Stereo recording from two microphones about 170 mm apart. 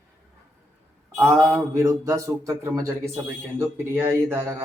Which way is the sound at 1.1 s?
5° right (ahead or behind).